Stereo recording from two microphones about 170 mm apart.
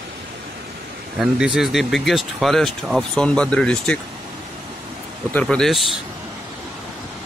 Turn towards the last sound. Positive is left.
turn(degrees=0)  # may be behind; listen again after turning